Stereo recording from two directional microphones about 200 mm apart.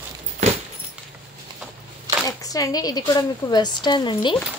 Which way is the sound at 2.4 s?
20° left (ahead or behind).